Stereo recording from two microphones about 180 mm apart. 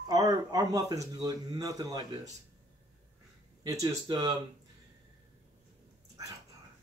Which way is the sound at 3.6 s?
20° right (ahead or behind).